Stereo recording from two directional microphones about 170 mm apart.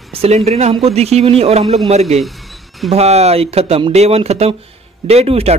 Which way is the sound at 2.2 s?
Centre (ahead or behind).